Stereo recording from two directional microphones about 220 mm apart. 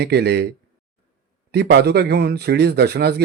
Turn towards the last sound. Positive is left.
turn(degrees=-45)  # may be behind; listen again after turning